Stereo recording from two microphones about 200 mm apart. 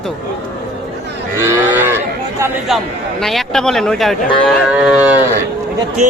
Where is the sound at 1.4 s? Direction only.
10° right (ahead or behind).